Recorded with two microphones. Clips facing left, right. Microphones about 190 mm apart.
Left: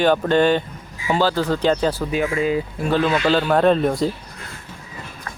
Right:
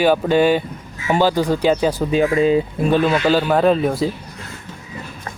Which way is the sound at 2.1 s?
25° right (ahead or behind).